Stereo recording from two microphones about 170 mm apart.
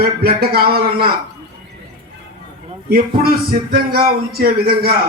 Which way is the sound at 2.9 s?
60° right (ahead or behind).